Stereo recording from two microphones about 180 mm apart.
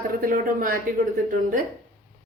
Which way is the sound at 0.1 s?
50° right (ahead or behind).